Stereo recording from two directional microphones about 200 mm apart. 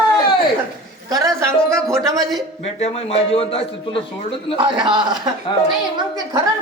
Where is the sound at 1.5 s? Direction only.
15° right (ahead or behind).